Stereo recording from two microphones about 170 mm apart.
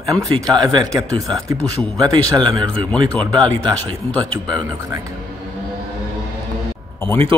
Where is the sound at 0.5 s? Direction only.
25° right (ahead or behind).